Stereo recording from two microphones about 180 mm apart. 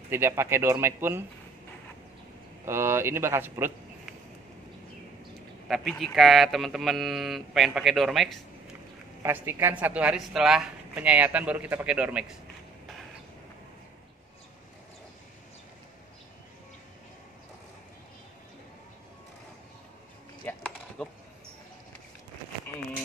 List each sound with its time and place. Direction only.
0.1 s speech: 15° right (ahead or behind)
2.6 s speech: 15° right (ahead or behind)
5.7 s speech: centre (ahead or behind)
9.2 s speech: 10° right (ahead or behind)
20.4 s a sound: 10° left (ahead or behind)